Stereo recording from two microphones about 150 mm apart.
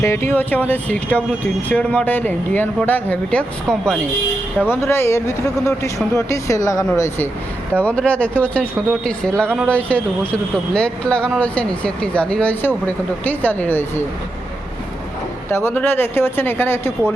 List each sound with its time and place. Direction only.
0.0 s speech: 15° left (ahead or behind)
4.7 s speech: 15° left (ahead or behind)
15.4 s speech: 15° left (ahead or behind)